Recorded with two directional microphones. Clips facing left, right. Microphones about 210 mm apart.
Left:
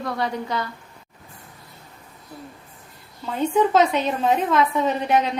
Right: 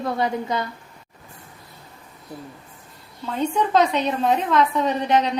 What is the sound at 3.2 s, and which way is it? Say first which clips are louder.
A woman's voice: left 3 dB; 5° left (ahead or behind).